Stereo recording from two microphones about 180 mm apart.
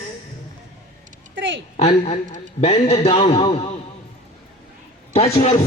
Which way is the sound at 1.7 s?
35° left (ahead or behind).